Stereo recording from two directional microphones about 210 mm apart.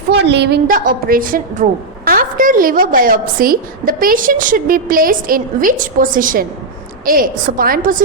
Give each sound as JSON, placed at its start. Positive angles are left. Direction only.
{"t": 0.1, "sound": "a woman's voice", "side_deg": -55}